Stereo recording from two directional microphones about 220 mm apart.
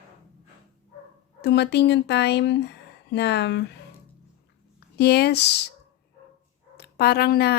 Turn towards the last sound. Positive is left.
turn(degrees=45)  # may be behind; listen again after turning